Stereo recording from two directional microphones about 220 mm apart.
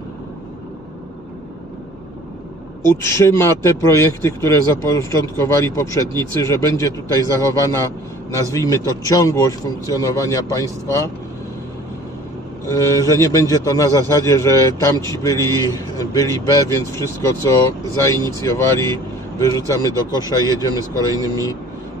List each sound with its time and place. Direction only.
2.8 s speech: 10° left (ahead or behind)
12.6 s speech: 15° left (ahead or behind)